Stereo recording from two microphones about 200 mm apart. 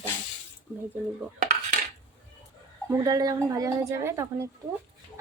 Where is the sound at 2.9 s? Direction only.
20° right (ahead or behind).